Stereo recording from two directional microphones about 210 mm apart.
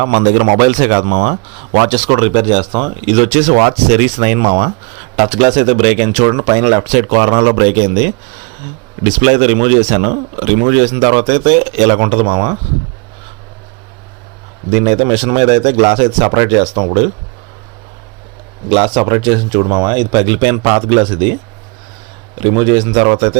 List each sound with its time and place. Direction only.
0.0 s a man's voice: 40° right (ahead or behind)
14.8 s speech: 30° right (ahead or behind)
18.7 s speech: 25° right (ahead or behind)
22.4 s speech: 20° right (ahead or behind)